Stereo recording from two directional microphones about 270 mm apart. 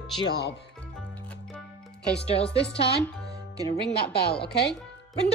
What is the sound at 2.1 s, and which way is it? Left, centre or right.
Speech, left.